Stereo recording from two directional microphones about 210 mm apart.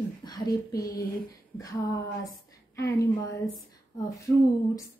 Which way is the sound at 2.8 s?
15° left (ahead or behind).